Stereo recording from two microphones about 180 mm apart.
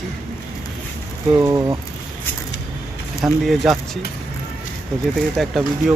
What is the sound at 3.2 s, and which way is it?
Speech, centre (ahead or behind).